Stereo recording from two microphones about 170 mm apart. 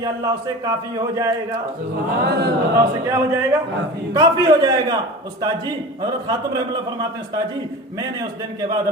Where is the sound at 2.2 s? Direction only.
70° right (ahead or behind).